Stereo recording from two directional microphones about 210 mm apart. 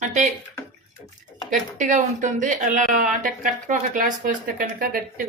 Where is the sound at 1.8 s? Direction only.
35° right (ahead or behind).